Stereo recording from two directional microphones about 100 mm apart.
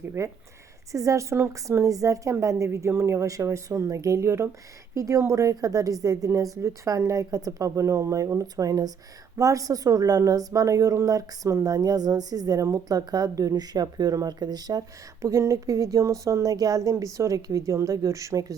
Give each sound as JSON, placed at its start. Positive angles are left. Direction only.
{"t": 0.2, "sound": "a woman's voice", "side_deg": -30}